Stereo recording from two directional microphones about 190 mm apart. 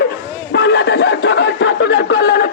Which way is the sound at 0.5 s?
65° left (ahead or behind).